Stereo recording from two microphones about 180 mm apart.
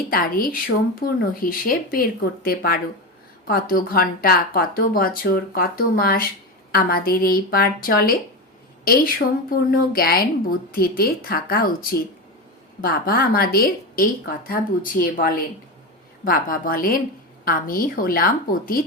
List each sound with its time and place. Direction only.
0.1 s a woman's voice: 55° left (ahead or behind)